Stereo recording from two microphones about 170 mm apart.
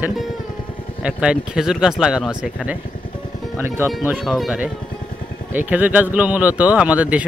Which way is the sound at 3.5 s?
15° right (ahead or behind).